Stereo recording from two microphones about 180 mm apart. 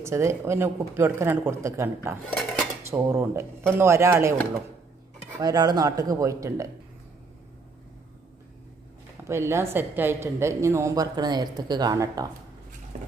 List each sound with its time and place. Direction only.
0.0 s a woman's voice: 15° right (ahead or behind)
5.4 s speech: 20° right (ahead or behind)
9.2 s a woman's voice: 15° right (ahead or behind)